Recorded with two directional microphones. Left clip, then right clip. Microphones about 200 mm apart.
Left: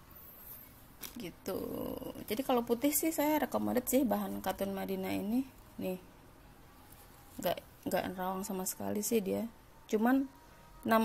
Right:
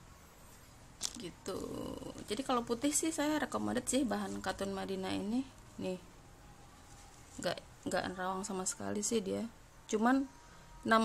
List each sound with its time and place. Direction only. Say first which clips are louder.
1.2 s speech: left 3 dB; 10° left (ahead or behind)
1.8 s speech: left 3 dB; 10° right (ahead or behind)
2.2 s speech: left 3 dB; 10° left (ahead or behind)
7.4 s speech: left 3 dB; 5° left (ahead or behind)